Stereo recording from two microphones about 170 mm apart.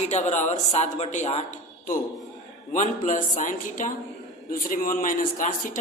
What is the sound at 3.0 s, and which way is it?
A man's voice, 50° left (ahead or behind).